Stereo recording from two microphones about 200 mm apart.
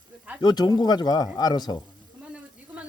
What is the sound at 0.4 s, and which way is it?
Speech, 20° left (ahead or behind).